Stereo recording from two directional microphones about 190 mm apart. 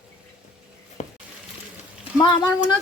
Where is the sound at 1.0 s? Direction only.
35° left (ahead or behind).